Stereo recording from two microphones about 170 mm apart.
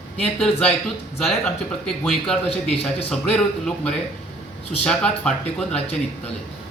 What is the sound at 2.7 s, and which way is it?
Speech, 35° left (ahead or behind).